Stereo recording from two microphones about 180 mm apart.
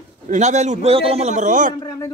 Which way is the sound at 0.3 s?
40° right (ahead or behind).